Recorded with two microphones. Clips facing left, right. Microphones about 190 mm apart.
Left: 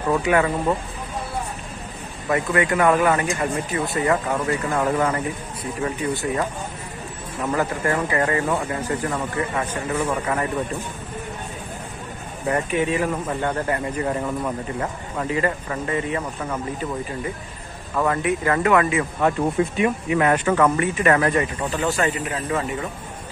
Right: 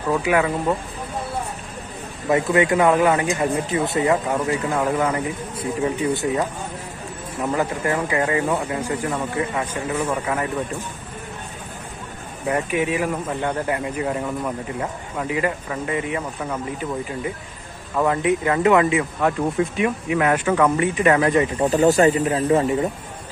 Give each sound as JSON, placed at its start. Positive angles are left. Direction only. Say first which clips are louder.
{"t": 0.1, "sound": "speech", "louder": "even", "side_deg": -5}
{"t": 2.2, "sound": "speech", "louder": "right 3 dB", "side_deg": -20}
{"t": 7.4, "sound": "speech", "louder": "even", "side_deg": -15}
{"t": 12.4, "sound": "speech", "louder": "even", "side_deg": -10}
{"t": 17.9, "sound": "speech", "louder": "right 2 dB", "side_deg": -15}
{"t": 19.2, "sound": "speech", "louder": "left 3 dB", "side_deg": 0}
{"t": 21.6, "sound": "speech", "louder": "right 7 dB", "side_deg": -40}